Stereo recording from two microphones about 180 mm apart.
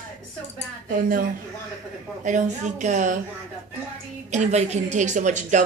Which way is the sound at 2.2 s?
45° right (ahead or behind).